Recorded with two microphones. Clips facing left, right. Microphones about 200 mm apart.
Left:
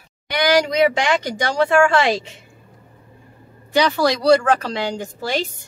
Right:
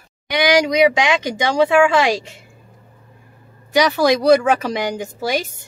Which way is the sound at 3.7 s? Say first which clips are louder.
Right 2 dB; 15° right (ahead or behind).